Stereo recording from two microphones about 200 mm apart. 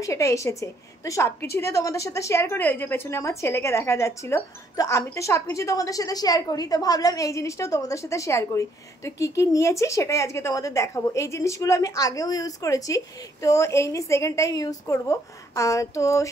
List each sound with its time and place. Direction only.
0.0 s a woman's voice: 15° left (ahead or behind)